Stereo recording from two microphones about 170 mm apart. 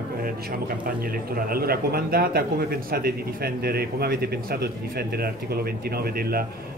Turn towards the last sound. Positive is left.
turn(degrees=-60)  # may be behind; listen again after turning